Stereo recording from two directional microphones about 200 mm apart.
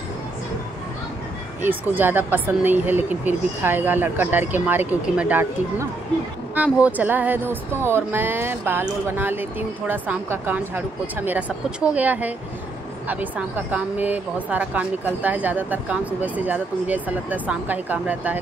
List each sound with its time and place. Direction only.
1.6 s speech: 10° right (ahead or behind)